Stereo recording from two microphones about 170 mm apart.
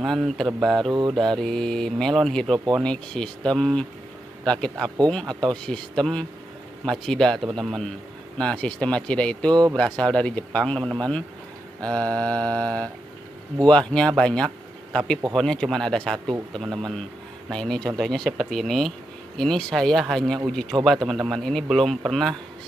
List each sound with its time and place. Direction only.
0.0 s speech: centre (ahead or behind)
4.8 s speech: 25° right (ahead or behind)
5.5 s speech: 5° left (ahead or behind)